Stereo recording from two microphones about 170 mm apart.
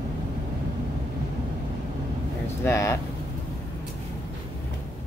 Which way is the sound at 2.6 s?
15° left (ahead or behind).